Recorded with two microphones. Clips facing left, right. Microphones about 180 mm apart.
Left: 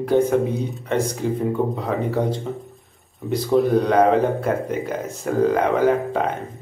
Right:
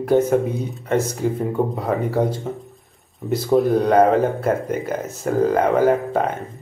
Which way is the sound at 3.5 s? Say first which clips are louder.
Right 1 dB; centre (ahead or behind).